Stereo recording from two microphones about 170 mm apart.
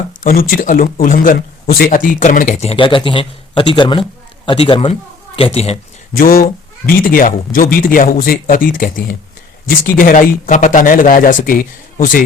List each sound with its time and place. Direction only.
0.2 s speech: 55° left (ahead or behind)
2.6 s a man's voice: 30° left (ahead or behind)
6.1 s speech: 55° left (ahead or behind)